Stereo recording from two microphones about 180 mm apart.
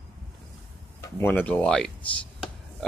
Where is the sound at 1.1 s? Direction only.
10° left (ahead or behind).